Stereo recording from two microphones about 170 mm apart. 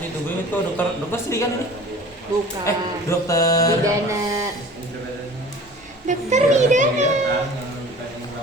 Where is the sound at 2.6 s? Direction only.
20° left (ahead or behind).